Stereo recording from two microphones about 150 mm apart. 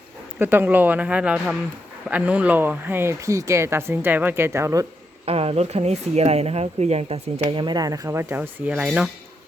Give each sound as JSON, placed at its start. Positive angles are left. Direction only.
{"t": 0.3, "sound": "speech", "side_deg": -15}
{"t": 5.2, "sound": "speech", "side_deg": -40}